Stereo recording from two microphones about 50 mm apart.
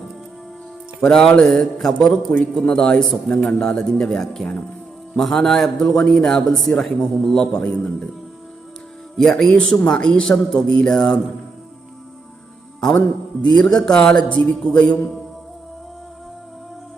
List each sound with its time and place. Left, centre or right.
1.0 s a man's voice: centre
9.1 s a man's voice: centre
13.4 s a man's voice: centre